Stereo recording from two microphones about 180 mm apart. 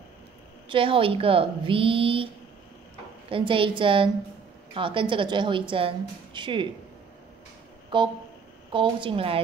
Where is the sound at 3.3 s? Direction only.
30° right (ahead or behind).